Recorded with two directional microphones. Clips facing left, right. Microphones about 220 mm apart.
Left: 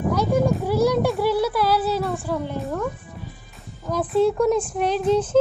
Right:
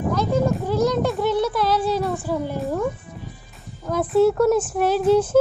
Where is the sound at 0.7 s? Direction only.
10° left (ahead or behind).